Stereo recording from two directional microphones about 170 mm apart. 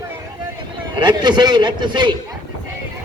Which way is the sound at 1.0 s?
25° right (ahead or behind).